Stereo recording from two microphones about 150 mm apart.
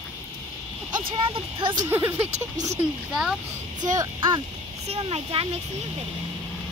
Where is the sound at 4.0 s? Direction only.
25° right (ahead or behind).